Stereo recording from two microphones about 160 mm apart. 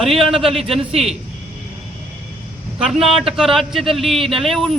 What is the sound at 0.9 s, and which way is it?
Speech, 40° right (ahead or behind).